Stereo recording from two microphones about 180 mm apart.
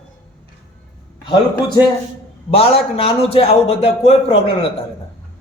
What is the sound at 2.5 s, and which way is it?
A man's voice, 30° left (ahead or behind).